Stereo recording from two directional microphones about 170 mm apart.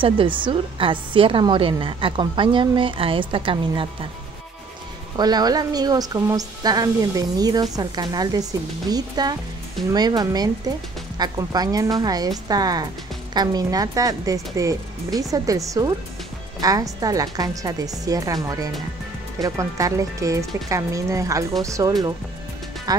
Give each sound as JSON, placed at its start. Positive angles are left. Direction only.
{"t": 0.0, "sound": "a woman's voice", "side_deg": -30}
{"t": 5.1, "sound": "speech", "side_deg": -25}